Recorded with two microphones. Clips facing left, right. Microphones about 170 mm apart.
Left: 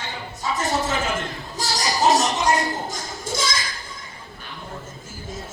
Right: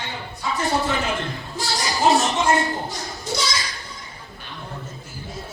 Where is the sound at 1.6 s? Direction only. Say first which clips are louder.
Left 1 dB; 40° left (ahead or behind).